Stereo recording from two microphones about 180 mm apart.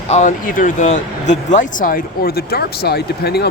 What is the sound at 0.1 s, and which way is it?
Speech, 45° left (ahead or behind).